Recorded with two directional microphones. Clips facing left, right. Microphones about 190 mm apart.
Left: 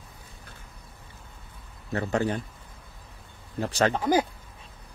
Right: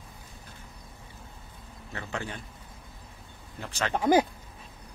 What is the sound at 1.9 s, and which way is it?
Speech, 40° left (ahead or behind).